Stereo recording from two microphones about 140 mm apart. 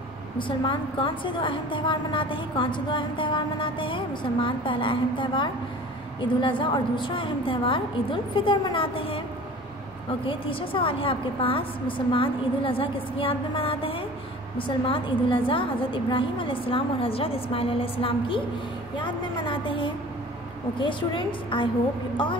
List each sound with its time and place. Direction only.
0.4 s a woman's voice: 35° left (ahead or behind)
10.2 s a woman's voice: 40° left (ahead or behind)